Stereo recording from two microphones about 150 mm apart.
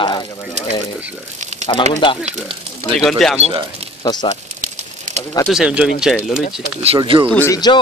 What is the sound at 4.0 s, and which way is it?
Speech, 25° left (ahead or behind).